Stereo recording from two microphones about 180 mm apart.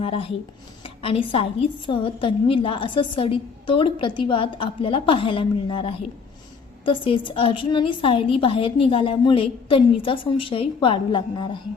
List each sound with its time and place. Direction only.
0.0 s a woman's voice: 30° left (ahead or behind)